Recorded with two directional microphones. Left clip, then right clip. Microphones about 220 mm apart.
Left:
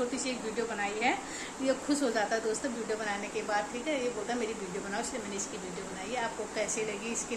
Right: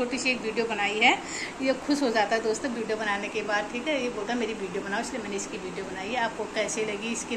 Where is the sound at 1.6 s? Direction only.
10° left (ahead or behind).